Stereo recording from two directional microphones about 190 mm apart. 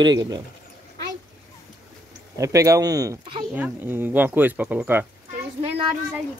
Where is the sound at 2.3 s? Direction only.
15° right (ahead or behind).